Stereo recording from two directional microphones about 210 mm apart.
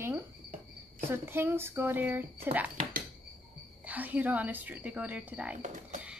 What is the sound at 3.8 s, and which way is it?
Speech, 5° right (ahead or behind).